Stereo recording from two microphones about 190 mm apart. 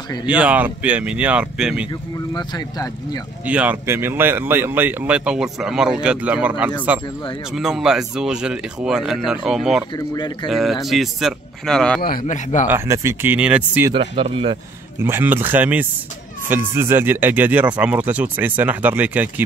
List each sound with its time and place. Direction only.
0.3 s speech: 5° right (ahead or behind)
2.3 s speech: 20° left (ahead or behind)
3.4 s speech: 5° right (ahead or behind)
9.9 s speech: 25° left (ahead or behind)
10.5 s speech: centre (ahead or behind)
12.0 s a man's voice: 45° left (ahead or behind)
12.6 s speech: 15° right (ahead or behind)
13.9 s speech: 30° right (ahead or behind)
15.0 s speech: 10° right (ahead or behind)